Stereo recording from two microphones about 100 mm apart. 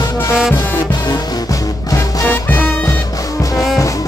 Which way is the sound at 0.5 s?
40° left (ahead or behind).